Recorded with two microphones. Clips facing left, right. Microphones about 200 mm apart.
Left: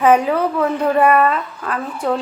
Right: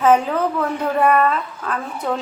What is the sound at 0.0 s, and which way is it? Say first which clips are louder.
A woman's voice: left 2 dB; 10° left (ahead or behind).